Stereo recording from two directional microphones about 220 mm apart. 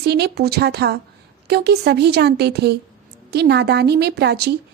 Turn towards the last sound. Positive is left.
turn(degrees=-50)  # may be behind; listen again after turning